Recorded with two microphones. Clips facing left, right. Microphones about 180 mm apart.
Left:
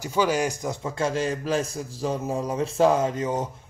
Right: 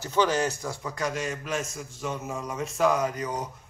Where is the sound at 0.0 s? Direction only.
10° left (ahead or behind).